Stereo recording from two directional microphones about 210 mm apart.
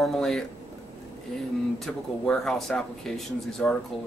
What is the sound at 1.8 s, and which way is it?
Speech, centre (ahead or behind).